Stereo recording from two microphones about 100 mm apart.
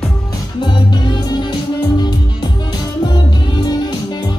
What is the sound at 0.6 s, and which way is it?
Music, 50° left (ahead or behind).